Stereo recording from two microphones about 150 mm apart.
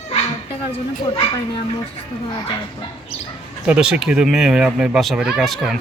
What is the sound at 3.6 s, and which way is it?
Speech, 5° right (ahead or behind).